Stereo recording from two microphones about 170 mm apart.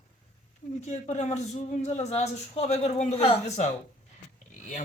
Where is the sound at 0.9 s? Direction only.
45° left (ahead or behind).